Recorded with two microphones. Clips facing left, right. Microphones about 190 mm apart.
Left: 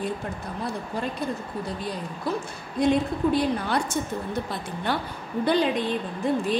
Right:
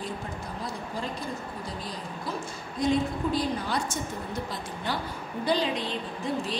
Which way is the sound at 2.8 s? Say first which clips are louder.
Left 4 dB; 60° left (ahead or behind).